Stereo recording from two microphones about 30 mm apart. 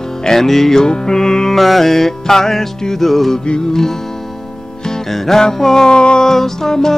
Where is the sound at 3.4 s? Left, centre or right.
Left.